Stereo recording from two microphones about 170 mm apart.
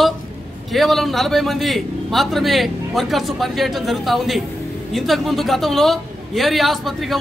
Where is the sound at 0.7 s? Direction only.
Centre (ahead or behind).